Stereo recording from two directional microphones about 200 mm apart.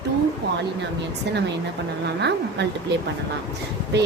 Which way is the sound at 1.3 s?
60° right (ahead or behind).